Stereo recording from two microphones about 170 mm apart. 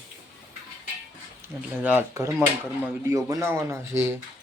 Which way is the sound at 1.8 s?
10° right (ahead or behind).